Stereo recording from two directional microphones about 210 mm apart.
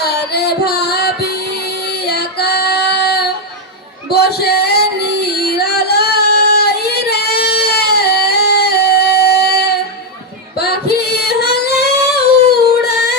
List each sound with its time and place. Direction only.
0.0 s music: 50° left (ahead or behind)
2.0 s female singing: 50° left (ahead or behind)
4.1 s a sound: 50° left (ahead or behind)
5.4 s child singing: 50° left (ahead or behind)
10.6 s female singing: 50° left (ahead or behind)
12.6 s singing: 50° left (ahead or behind)